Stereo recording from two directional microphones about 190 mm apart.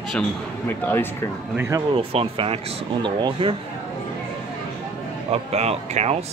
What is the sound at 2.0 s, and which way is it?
Speech, 30° right (ahead or behind).